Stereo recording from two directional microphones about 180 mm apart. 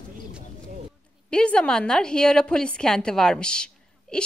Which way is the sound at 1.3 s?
5° left (ahead or behind).